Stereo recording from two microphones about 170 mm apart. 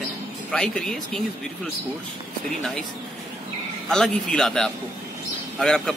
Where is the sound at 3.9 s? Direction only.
5° left (ahead or behind).